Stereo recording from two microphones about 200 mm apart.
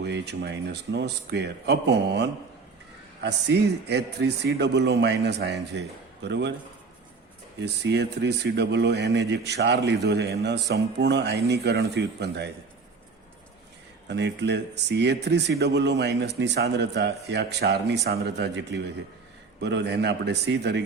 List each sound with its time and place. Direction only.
0.0 s speech: 55° right (ahead or behind)
7.6 s speech: 60° right (ahead or behind)
14.1 s speech: 60° right (ahead or behind)